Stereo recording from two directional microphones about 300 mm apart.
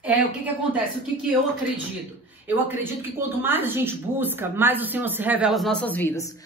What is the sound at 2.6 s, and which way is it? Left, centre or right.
A woman's voice, centre.